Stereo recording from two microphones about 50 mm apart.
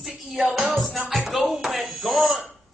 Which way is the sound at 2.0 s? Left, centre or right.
Centre.